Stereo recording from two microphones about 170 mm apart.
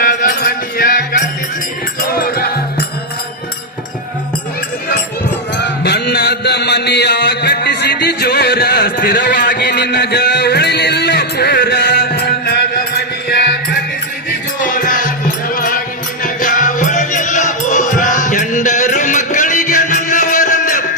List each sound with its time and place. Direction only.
0.0 s music: 55° left (ahead or behind)
5.5 s music: 75° left (ahead or behind)
14.6 s music: 50° left (ahead or behind)